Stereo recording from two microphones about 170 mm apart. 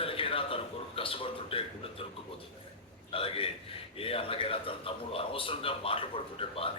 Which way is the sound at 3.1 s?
35° left (ahead or behind).